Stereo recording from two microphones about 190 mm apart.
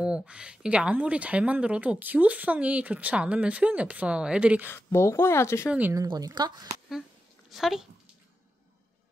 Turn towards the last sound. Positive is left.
turn(degrees=0)  # may be behind; listen again after turning